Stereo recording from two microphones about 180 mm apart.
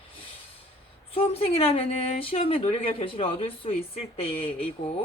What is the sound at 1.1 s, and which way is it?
Speech, 30° left (ahead or behind).